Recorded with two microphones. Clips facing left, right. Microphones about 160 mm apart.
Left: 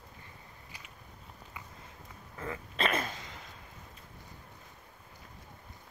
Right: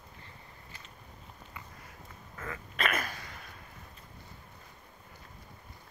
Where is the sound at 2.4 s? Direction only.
30° left (ahead or behind).